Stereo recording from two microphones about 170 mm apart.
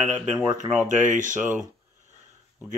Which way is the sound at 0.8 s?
45° right (ahead or behind).